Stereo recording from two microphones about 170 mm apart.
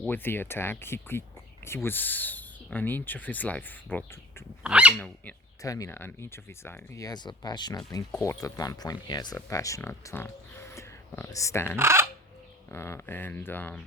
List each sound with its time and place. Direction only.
0.0 s speech: 10° left (ahead or behind)
4.6 s speech: 5° right (ahead or behind)
4.9 s speech: 5° left (ahead or behind)
5.6 s speech: 20° left (ahead or behind)
11.8 s speech: 15° right (ahead or behind)
12.6 s speech: 15° left (ahead or behind)